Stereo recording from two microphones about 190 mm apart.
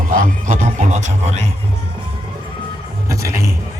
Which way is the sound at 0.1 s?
45° right (ahead or behind).